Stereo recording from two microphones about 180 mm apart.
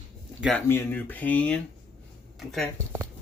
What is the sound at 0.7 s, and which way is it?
Speech, 10° left (ahead or behind).